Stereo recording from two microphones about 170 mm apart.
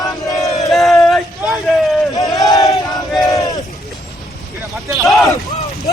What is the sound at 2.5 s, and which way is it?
Battle cry, 20° left (ahead or behind).